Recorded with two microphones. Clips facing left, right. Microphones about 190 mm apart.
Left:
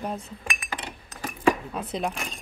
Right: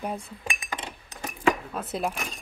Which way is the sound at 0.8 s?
20° right (ahead or behind).